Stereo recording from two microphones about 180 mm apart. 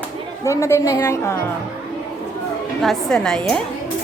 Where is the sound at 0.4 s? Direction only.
15° left (ahead or behind).